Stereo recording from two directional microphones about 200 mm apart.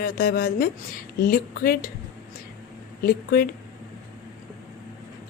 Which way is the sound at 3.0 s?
50° left (ahead or behind).